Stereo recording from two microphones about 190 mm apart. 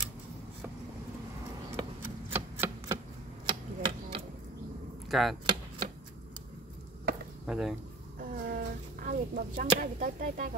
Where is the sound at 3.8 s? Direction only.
30° right (ahead or behind).